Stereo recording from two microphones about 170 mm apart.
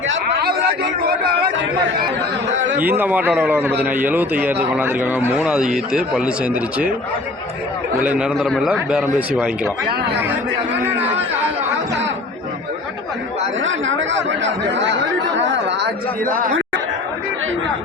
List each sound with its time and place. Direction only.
0.1 s a man's voice: 65° right (ahead or behind)
2.5 s a man's voice: 90° right
2.7 s a man's voice: 10° right (ahead or behind)
7.9 s a man's voice: 5° right (ahead or behind)
13.6 s speech: 90° right
16.5 s chatter: 90° right